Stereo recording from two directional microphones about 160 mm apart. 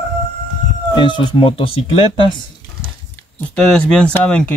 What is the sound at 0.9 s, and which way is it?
Speech, 30° left (ahead or behind).